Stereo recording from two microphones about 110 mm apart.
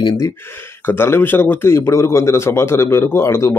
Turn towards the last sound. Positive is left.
turn(degrees=25)  # may be behind; listen again after turning